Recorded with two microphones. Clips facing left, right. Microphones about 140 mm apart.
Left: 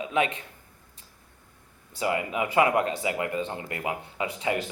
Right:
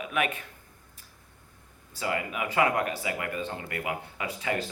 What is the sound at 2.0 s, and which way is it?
Speech, 20° left (ahead or behind).